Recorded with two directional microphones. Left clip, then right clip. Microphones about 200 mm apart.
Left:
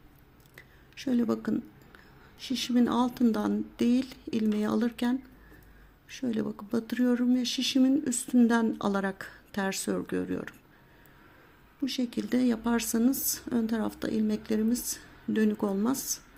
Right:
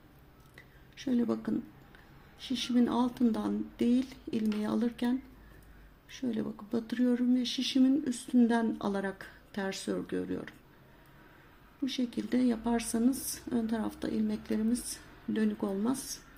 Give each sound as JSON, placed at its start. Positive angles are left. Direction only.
{"t": 0.5, "sound": "a sound", "side_deg": 25}
{"t": 2.4, "sound": "speech", "side_deg": 25}
{"t": 11.9, "sound": "speech", "side_deg": 25}